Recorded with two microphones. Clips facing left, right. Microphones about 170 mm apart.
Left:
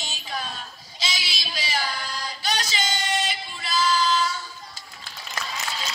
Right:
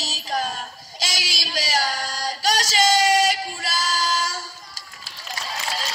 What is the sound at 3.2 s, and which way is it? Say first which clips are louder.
Female singing: right 8 dB; 40° right (ahead or behind).